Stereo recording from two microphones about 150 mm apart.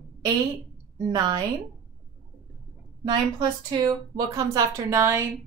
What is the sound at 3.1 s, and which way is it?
Speech, 30° right (ahead or behind).